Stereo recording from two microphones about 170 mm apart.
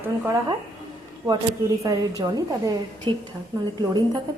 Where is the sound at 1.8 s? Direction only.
20° right (ahead or behind).